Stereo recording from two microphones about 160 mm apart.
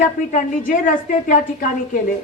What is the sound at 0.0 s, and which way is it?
A woman's voice, 55° left (ahead or behind).